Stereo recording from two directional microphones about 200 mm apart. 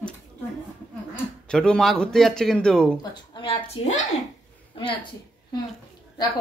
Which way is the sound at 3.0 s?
20° left (ahead or behind).